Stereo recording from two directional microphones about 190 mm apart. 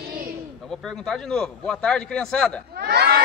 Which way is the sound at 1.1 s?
5° left (ahead or behind).